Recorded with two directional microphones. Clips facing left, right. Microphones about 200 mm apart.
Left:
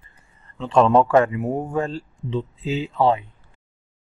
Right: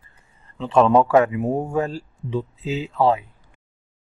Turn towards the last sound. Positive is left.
turn(degrees=-5)  # may be behind; listen again after turning